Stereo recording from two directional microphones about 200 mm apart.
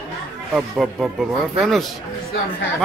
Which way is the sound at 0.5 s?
Centre (ahead or behind).